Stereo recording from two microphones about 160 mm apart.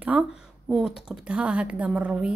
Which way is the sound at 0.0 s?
5° right (ahead or behind).